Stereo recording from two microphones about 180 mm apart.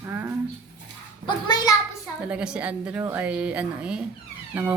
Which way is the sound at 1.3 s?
25° left (ahead or behind).